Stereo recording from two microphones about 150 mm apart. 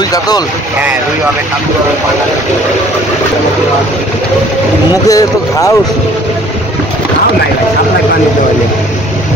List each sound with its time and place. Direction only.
5.0 s speech: 25° left (ahead or behind)